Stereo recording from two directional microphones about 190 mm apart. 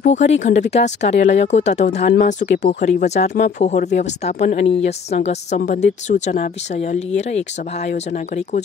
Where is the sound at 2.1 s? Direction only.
55° left (ahead or behind).